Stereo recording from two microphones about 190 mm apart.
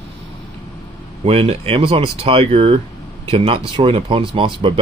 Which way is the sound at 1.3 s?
30° right (ahead or behind).